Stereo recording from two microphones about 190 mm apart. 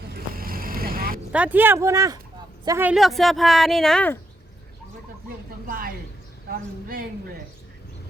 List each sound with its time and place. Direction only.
0.1 s vehicle: 50° right (ahead or behind)
1.3 s speech: 10° right (ahead or behind)
2.9 s speech: centre (ahead or behind)
5.6 s a woman's voice: 50° right (ahead or behind)